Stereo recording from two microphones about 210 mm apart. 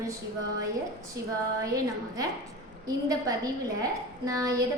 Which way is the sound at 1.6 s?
15° right (ahead or behind).